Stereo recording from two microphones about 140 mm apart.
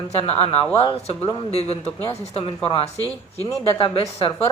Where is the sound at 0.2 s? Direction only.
45° left (ahead or behind).